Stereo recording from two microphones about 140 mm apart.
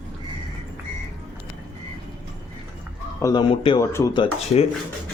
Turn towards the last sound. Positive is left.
turn(degrees=35)  # may be behind; listen again after turning